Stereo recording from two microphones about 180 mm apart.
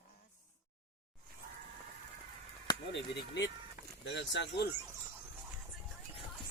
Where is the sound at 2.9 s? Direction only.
75° left (ahead or behind).